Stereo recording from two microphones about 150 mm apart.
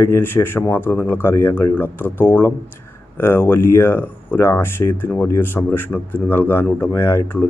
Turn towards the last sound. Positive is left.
turn(degrees=15)  # may be behind; listen again after turning